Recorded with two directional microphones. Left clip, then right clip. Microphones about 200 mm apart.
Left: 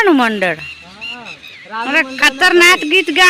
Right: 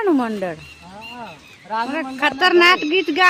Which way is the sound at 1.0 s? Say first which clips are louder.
Left 7 dB; 25° right (ahead or behind).